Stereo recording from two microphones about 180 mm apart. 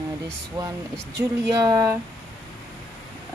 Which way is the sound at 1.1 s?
20° right (ahead or behind).